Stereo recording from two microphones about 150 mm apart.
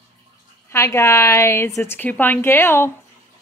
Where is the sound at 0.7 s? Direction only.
20° left (ahead or behind).